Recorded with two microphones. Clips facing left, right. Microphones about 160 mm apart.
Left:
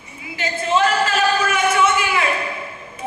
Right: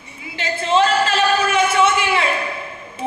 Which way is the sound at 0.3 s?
30° right (ahead or behind).